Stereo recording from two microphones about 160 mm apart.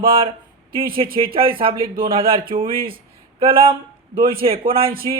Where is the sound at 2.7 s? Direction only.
65° right (ahead or behind).